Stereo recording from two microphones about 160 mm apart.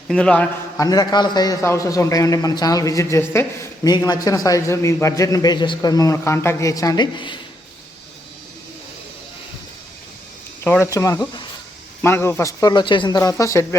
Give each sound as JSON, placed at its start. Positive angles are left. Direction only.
{"t": 0.1, "sound": "speech", "side_deg": 5}
{"t": 0.8, "sound": "a man's voice", "side_deg": 25}
{"t": 10.6, "sound": "a man's voice", "side_deg": 15}